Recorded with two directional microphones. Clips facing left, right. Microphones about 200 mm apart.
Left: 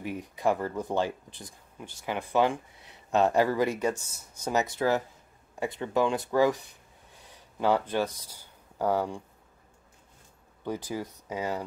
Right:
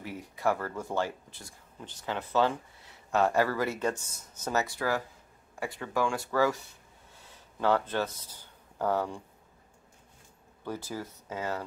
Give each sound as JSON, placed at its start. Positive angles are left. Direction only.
{"t": 0.0, "sound": "speech", "side_deg": 15}
{"t": 10.6, "sound": "speech", "side_deg": 15}